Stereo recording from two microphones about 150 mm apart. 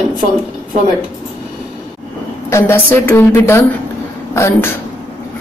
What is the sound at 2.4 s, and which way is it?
Speech, 15° left (ahead or behind).